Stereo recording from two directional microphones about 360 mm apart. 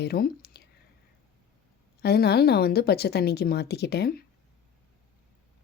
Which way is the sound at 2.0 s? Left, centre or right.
Left.